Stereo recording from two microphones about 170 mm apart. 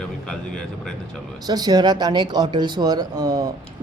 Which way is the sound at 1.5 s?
25° right (ahead or behind).